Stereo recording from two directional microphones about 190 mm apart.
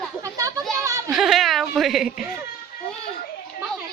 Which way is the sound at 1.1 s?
Centre (ahead or behind).